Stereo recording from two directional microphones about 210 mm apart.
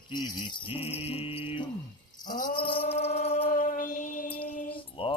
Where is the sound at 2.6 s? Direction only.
25° left (ahead or behind).